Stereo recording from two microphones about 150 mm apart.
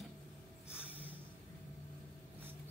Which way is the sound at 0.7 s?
10° right (ahead or behind).